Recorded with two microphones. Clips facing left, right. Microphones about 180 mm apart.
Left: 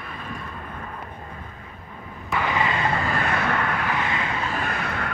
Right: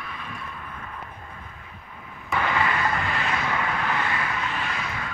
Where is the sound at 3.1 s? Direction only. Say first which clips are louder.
Left 3 dB; 55° left (ahead or behind).